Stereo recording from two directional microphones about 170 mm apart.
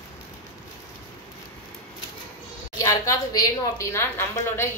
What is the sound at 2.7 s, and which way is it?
A woman's voice, 20° left (ahead or behind).